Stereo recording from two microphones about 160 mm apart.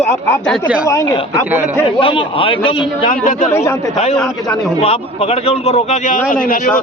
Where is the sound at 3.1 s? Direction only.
55° left (ahead or behind).